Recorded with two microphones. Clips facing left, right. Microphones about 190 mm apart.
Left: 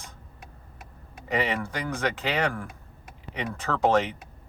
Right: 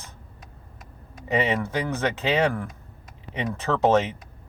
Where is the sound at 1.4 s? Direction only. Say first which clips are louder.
Right 4 dB; 20° right (ahead or behind).